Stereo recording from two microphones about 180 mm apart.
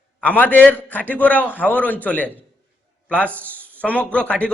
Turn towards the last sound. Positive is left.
turn(degrees=5)  # may be behind; listen again after turning